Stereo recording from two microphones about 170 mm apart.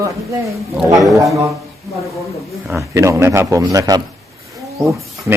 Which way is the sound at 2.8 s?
15° right (ahead or behind).